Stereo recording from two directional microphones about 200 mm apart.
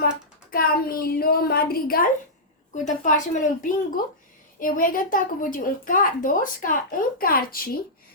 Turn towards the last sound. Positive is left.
turn(degrees=45)  # may be behind; listen again after turning